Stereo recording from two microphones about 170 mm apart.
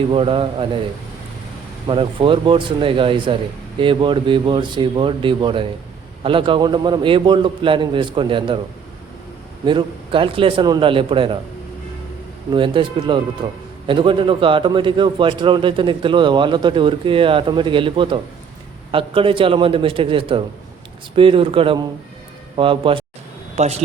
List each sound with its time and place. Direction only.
0.1 s a man's voice: 30° right (ahead or behind)
1.9 s a man's voice: 30° right (ahead or behind)
9.6 s a man's voice: 30° right (ahead or behind)
12.5 s a man's voice: 30° right (ahead or behind)